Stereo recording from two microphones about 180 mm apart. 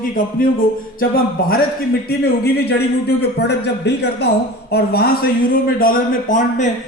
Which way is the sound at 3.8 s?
70° left (ahead or behind).